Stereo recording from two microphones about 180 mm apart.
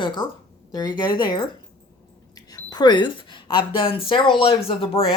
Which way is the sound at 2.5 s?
20° left (ahead or behind).